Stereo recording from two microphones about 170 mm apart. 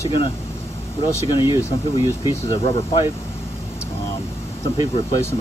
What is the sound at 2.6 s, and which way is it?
Speech, 30° left (ahead or behind).